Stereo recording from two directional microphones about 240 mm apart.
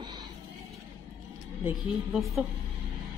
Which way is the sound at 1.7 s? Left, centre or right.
Centre.